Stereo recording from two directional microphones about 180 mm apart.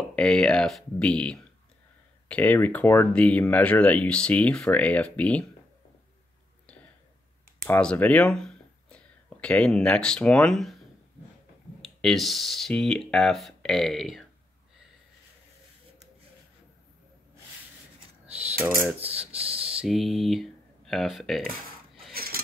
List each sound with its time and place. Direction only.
0.1 s speech: 5° left (ahead or behind)
7.6 s speech: 5° left (ahead or behind)
11.8 s speech: centre (ahead or behind)
19.3 s a sound: 35° right (ahead or behind)
19.6 s speech: 5° right (ahead or behind)
22.1 s filing: 55° right (ahead or behind)